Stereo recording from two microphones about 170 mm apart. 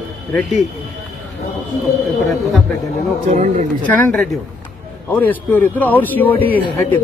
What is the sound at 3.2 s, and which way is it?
Speech, 45° right (ahead or behind).